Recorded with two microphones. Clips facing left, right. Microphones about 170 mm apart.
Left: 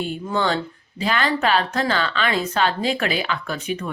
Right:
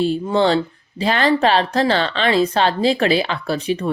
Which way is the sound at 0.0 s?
30° right (ahead or behind).